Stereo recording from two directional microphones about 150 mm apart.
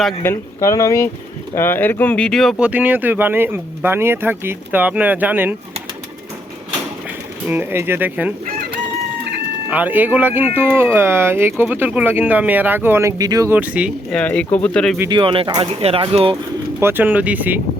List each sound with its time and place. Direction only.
0.2 s speech: 20° left (ahead or behind); by 5.5 s 10° right (ahead or behind)
7.4 s speech: 15° right (ahead or behind)
9.6 s speech: 10° right (ahead or behind)
13.5 s speech: 10° right (ahead or behind)
14.1 s speech: 10° left (ahead or behind)
15.1 s speech: 35° right (ahead or behind)
16.8 s speech: 10° right (ahead or behind)